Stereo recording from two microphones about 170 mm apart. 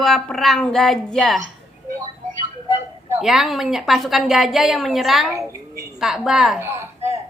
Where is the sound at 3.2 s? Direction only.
Centre (ahead or behind).